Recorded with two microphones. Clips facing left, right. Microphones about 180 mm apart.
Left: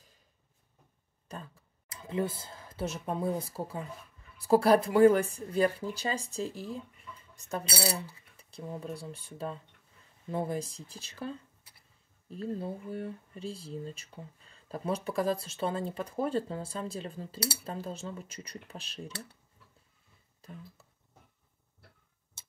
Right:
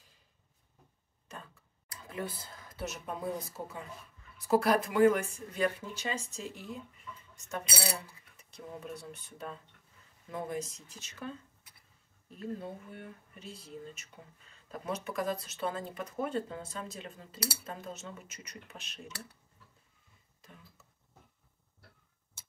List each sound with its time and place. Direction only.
1.9 s speech: 25° left (ahead or behind)